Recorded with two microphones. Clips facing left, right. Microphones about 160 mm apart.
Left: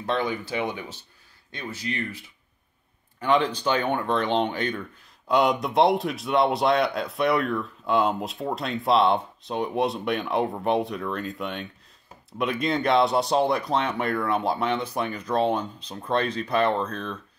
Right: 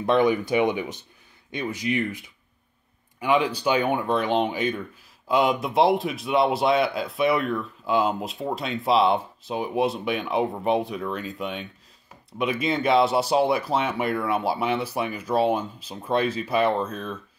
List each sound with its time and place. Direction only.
0.0 s speech: 20° right (ahead or behind)